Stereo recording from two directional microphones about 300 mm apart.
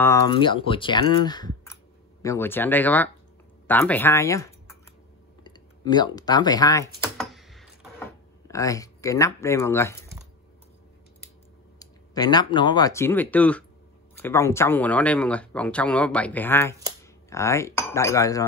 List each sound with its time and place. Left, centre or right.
0.0 s speech: centre
7.2 s a sound: centre
8.5 s speech: centre
11.8 s speech: centre
17.0 s cutlery: centre